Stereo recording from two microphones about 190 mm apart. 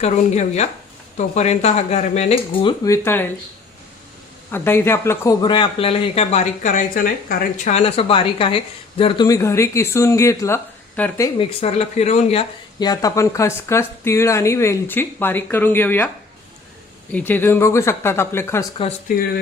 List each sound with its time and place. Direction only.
0.0 s speech: 35° left (ahead or behind); by 3.2 s 10° left (ahead or behind)
4.5 s speech: 10° left (ahead or behind)
11.3 s speech: 35° left (ahead or behind); by 16.0 s 10° left (ahead or behind)
17.1 s speech: 10° left (ahead or behind)
18.8 s speech: 25° left (ahead or behind)